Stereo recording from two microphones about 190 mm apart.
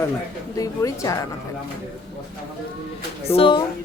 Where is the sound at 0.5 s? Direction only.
20° left (ahead or behind).